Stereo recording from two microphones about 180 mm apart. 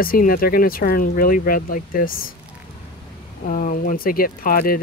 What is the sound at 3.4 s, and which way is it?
Speech, 45° left (ahead or behind).